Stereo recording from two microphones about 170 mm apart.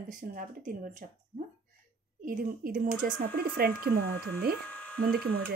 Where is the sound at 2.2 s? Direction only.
55° right (ahead or behind).